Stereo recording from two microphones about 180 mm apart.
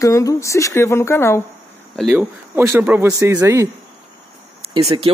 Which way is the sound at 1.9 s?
Centre (ahead or behind).